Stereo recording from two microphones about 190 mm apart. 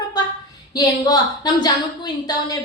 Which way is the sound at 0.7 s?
20° left (ahead or behind).